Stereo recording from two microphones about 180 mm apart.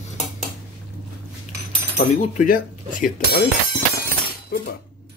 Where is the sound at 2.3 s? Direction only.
50° left (ahead or behind).